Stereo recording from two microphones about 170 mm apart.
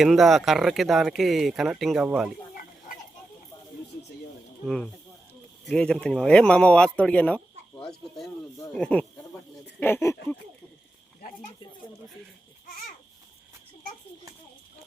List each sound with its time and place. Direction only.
0.0 s speech: centre (ahead or behind)
4.6 s speech: centre (ahead or behind)
8.7 s speech: 5° left (ahead or behind)